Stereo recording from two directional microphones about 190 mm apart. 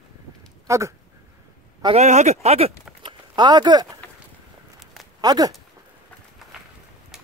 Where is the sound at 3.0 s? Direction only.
25° right (ahead or behind).